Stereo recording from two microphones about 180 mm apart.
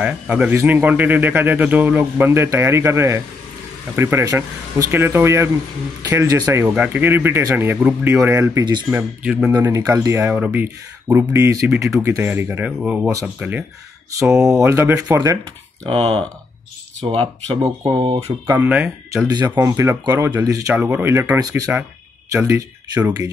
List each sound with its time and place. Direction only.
0.0 s a man's voice: 5° right (ahead or behind); by 9.0 s 25° right (ahead or behind)
9.2 s speech: 5° right (ahead or behind)
9.5 s a man's voice: 20° right (ahead or behind)
15.9 s speech: 30° right (ahead or behind)
17.2 s speech: 25° right (ahead or behind)
18.6 s a man's voice: 10° right (ahead or behind)
19.2 s a man's voice: 25° right (ahead or behind)